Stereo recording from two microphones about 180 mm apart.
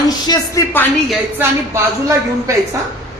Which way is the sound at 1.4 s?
15° right (ahead or behind).